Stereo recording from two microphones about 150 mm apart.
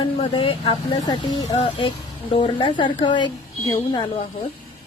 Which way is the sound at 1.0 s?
30° left (ahead or behind).